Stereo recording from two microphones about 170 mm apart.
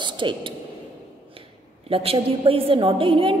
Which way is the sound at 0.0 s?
30° right (ahead or behind).